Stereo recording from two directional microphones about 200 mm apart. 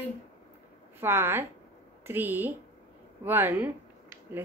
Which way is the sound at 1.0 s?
10° right (ahead or behind).